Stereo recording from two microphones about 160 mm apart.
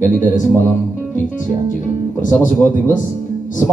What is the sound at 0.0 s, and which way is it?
A man's voice, 55° left (ahead or behind).